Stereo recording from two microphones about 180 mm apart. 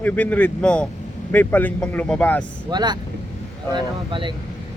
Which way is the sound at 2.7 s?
25° right (ahead or behind).